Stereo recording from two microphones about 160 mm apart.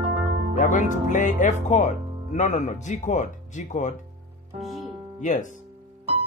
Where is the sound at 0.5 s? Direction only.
50° left (ahead or behind).